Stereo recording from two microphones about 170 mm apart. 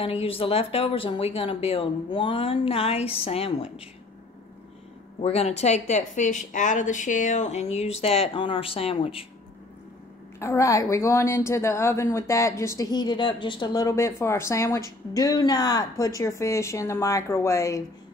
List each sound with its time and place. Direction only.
0.0 s a woman's voice: 35° left (ahead or behind)
5.2 s a woman's voice: 40° left (ahead or behind)
10.4 s a woman's voice: 15° left (ahead or behind)